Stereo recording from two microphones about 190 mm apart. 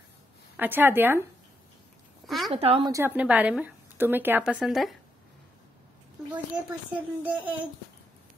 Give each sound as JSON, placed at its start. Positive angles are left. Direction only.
{"t": 0.6, "sound": "a woman's voice", "side_deg": -10}
{"t": 2.2, "sound": "a sound", "side_deg": 0}
{"t": 2.5, "sound": "speech", "side_deg": -30}
{"t": 2.9, "sound": "a woman's voice", "side_deg": -10}
{"t": 7.0, "sound": "a woman's voice", "side_deg": -10}